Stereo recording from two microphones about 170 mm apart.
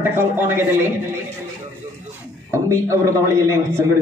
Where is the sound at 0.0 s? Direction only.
10° right (ahead or behind).